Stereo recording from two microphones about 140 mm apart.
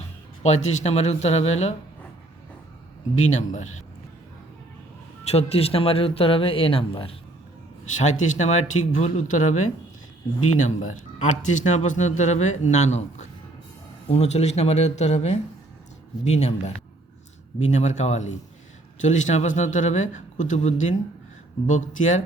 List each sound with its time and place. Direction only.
0.4 s speech: 50° left (ahead or behind)
3.2 s speech: 60° left (ahead or behind)
5.2 s speech: 45° left (ahead or behind)
7.9 s speech: 60° left (ahead or behind)